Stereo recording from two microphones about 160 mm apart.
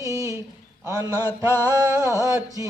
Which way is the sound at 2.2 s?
20° right (ahead or behind).